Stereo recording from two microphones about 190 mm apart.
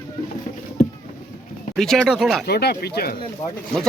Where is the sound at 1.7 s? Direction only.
Centre (ahead or behind).